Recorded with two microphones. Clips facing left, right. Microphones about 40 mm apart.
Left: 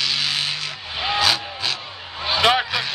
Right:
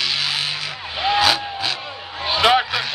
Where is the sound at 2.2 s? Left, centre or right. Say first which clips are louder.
Right 2 dB; centre.